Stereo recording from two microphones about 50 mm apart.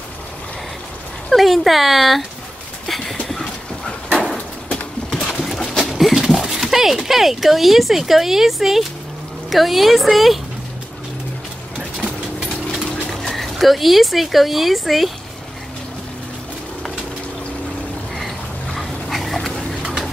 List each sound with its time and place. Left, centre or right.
1.3 s speech: centre
2.9 s a sound: centre
3.3 s clip-clop: centre
4.1 s bird: centre
5.4 s a sound: centre
5.9 s speech: centre
13.1 s speech: centre
18.8 s dog: centre
19.8 s pigeon: centre